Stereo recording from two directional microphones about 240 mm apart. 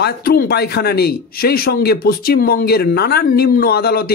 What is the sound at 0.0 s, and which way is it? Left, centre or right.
Speech, left.